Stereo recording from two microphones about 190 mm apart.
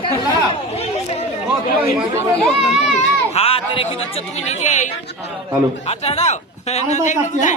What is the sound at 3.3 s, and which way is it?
A man's voice, 30° left (ahead or behind).